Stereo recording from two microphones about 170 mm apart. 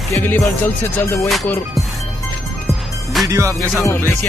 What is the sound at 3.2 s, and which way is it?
Speech, 20° right (ahead or behind).